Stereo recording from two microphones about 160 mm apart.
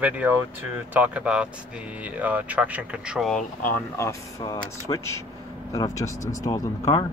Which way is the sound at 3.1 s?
Centre (ahead or behind).